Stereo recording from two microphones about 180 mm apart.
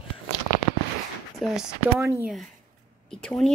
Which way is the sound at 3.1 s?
5° left (ahead or behind).